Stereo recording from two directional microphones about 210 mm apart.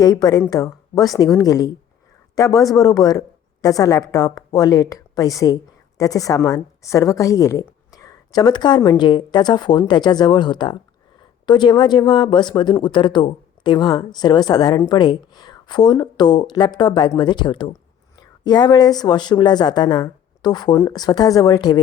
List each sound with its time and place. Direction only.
0.0 s speech: 20° left (ahead or behind)